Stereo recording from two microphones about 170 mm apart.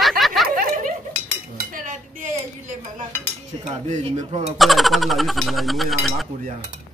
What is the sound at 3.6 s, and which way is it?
Speech, 40° right (ahead or behind).